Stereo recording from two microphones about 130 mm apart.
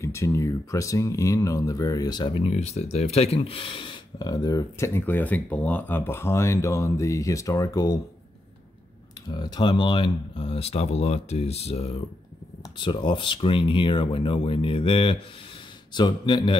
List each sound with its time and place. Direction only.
0.0 s speech: 20° left (ahead or behind)
9.3 s speech: 35° left (ahead or behind); by 12.0 s 50° left (ahead or behind)
12.7 s speech: 40° left (ahead or behind)